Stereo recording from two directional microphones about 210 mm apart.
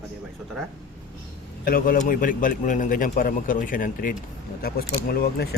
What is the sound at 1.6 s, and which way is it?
A man's voice, 45° left (ahead or behind).